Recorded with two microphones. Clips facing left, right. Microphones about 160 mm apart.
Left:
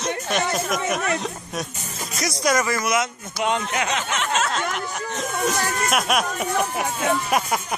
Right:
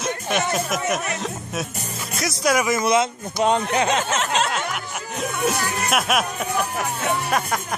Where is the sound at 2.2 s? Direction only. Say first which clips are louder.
Right 1 dB; 5° right (ahead or behind).